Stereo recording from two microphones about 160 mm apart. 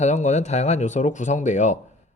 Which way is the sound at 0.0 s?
45° left (ahead or behind).